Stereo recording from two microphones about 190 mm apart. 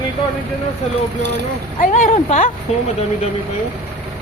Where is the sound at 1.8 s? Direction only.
40° left (ahead or behind).